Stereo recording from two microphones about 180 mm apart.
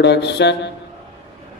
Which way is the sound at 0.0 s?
70° left (ahead or behind).